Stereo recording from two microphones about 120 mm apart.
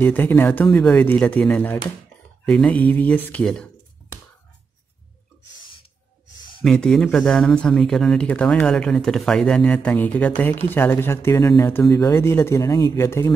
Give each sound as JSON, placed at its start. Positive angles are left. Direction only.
{"t": 0.0, "sound": "speech", "side_deg": 15}
{"t": 6.6, "sound": "speech", "side_deg": 5}